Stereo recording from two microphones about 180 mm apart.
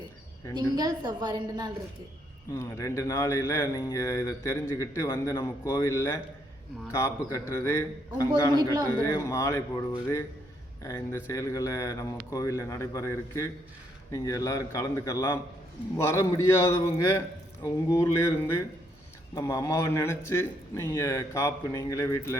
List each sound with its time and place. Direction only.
0.5 s a woman's voice: 25° right (ahead or behind)
2.5 s a man's voice: 15° left (ahead or behind)